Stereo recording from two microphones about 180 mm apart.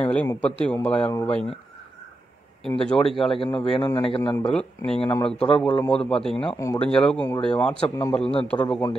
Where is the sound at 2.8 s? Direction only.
5° left (ahead or behind).